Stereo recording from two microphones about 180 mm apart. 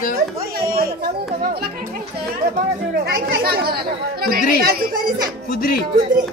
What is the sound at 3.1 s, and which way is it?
Speech, 60° right (ahead or behind).